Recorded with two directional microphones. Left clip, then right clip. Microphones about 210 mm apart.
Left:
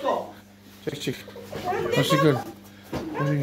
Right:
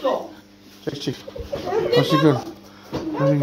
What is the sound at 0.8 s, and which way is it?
Speech, centre (ahead or behind).